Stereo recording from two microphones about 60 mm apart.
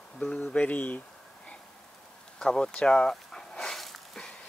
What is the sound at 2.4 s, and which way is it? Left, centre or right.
Walk, centre.